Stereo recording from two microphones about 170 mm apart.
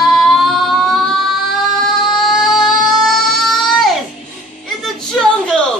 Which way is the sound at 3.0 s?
Centre (ahead or behind).